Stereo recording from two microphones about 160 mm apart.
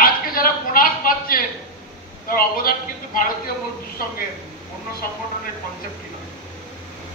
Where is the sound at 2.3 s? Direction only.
65° left (ahead or behind).